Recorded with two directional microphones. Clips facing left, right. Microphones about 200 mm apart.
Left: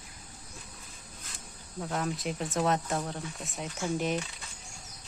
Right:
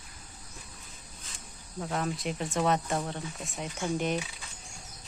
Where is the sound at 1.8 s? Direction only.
Centre (ahead or behind).